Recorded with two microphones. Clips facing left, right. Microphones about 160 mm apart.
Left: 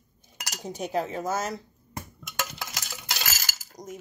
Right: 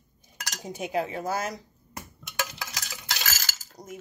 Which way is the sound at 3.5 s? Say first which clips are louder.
Left 1 dB; 10° left (ahead or behind).